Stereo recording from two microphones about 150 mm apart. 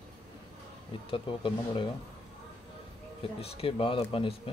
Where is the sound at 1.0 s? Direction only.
35° left (ahead or behind).